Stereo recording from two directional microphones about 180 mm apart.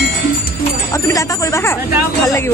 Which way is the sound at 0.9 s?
15° left (ahead or behind).